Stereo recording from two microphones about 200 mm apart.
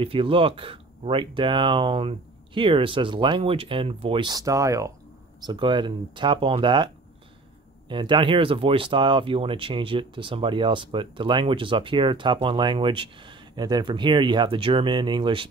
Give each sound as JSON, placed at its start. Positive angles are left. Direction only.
{"t": 0.0, "sound": "speech", "side_deg": -25}
{"t": 7.9, "sound": "speech", "side_deg": -25}